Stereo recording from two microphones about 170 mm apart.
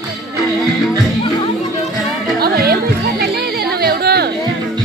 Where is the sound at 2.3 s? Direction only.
65° right (ahead or behind).